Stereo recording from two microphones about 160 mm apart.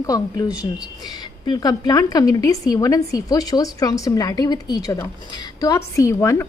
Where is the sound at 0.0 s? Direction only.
20° left (ahead or behind).